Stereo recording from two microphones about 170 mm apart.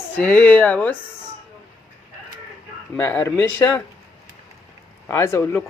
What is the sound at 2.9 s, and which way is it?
Speech, 10° left (ahead or behind).